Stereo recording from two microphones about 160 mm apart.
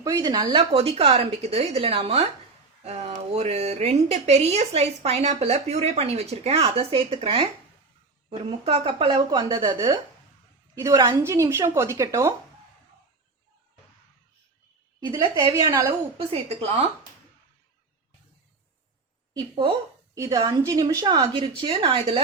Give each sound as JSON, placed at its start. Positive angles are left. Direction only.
{"t": 0.0, "sound": "a woman's voice", "side_deg": -20}
{"t": 11.2, "sound": "a woman's voice", "side_deg": -15}
{"t": 15.1, "sound": "a woman's voice", "side_deg": -20}
{"t": 16.1, "sound": "a woman's voice", "side_deg": -40}
{"t": 19.3, "sound": "a woman's voice", "side_deg": -30}